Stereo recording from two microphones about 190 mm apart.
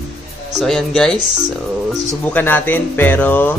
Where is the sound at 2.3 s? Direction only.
10° left (ahead or behind).